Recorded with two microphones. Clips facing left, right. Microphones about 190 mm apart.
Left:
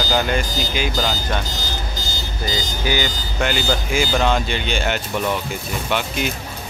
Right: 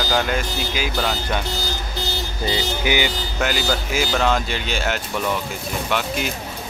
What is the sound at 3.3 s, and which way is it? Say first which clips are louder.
A man's voice: left 2 dB; 5° right (ahead or behind).